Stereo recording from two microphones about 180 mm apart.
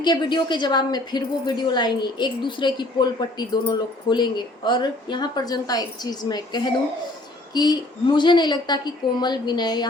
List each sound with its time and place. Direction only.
0.0 s a woman's voice: 25° left (ahead or behind)